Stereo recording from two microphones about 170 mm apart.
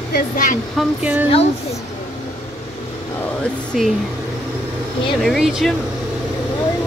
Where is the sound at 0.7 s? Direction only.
10° right (ahead or behind).